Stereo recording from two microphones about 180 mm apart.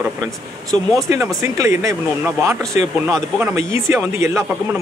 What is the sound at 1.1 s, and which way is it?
Speech, 20° right (ahead or behind).